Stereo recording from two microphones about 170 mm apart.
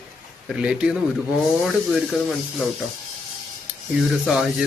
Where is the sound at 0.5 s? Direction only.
5° right (ahead or behind).